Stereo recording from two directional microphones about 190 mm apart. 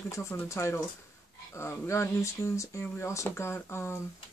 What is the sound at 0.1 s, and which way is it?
Speech, 15° left (ahead or behind).